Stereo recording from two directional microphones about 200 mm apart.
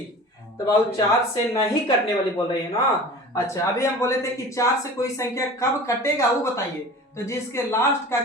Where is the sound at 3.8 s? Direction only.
15° left (ahead or behind).